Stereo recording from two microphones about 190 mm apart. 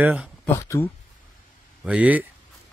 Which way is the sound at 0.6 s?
15° left (ahead or behind).